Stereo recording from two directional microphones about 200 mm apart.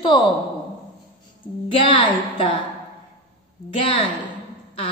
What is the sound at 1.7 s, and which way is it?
Speech, 25° left (ahead or behind).